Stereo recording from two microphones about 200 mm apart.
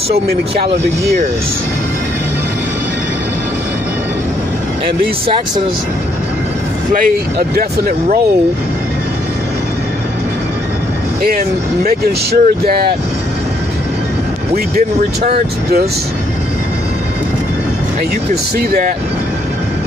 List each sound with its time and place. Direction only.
0.1 s speech: 55° right (ahead or behind)
6.9 s speech: 45° right (ahead or behind)
12.3 s speech: 50° right (ahead or behind)
15.2 s speech: 50° right (ahead or behind)
18.3 s speech: 40° right (ahead or behind)